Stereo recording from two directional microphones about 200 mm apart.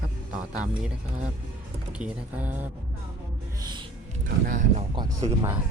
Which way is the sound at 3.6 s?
20° right (ahead or behind).